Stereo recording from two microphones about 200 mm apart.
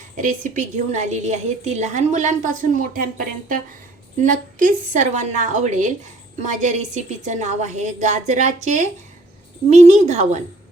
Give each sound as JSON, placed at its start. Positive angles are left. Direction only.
{"t": 0.2, "sound": "a woman's voice", "side_deg": -40}